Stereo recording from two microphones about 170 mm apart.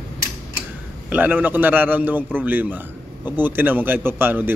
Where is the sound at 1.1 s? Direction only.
10° right (ahead or behind).